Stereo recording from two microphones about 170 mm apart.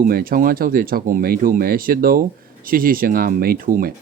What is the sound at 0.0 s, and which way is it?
Speech, 60° right (ahead or behind).